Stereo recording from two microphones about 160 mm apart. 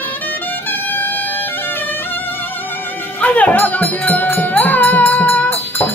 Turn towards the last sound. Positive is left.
turn(degrees=10)  # may be behind; listen again after turning